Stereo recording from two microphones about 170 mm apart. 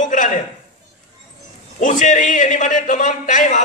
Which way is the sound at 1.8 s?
45° left (ahead or behind).